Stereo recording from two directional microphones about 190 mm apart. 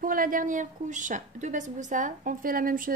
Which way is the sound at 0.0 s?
45° right (ahead or behind).